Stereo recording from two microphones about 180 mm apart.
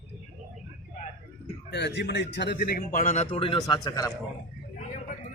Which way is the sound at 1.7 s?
70° left (ahead or behind).